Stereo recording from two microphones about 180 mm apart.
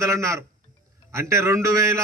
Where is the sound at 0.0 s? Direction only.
15° right (ahead or behind).